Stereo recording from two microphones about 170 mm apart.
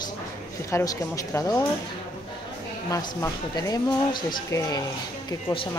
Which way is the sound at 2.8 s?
20° left (ahead or behind).